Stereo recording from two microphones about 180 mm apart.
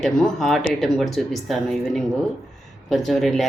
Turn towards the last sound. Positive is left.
turn(degrees=0)  # may be behind; listen again after turning